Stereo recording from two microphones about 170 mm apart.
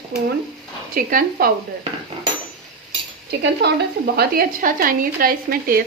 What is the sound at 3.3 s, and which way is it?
Speech, 75° right (ahead or behind).